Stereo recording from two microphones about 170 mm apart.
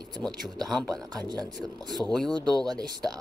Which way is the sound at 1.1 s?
25° right (ahead or behind).